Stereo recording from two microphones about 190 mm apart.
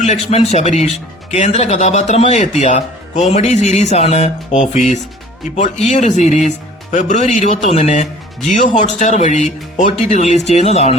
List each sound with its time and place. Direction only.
0.0 s speech: 35° left (ahead or behind)